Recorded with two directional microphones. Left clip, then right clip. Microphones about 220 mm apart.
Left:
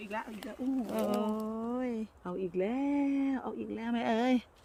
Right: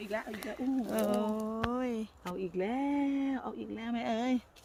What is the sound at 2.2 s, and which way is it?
Speech, 10° left (ahead or behind).